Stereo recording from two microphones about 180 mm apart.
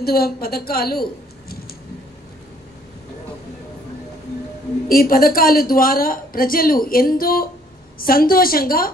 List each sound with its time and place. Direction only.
0.0 s a woman's voice: 60° left (ahead or behind)
4.8 s a woman's voice: 55° left (ahead or behind)